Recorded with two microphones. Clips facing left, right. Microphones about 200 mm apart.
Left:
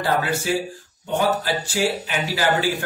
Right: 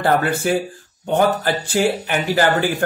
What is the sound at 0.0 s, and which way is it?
Speech, 55° right (ahead or behind).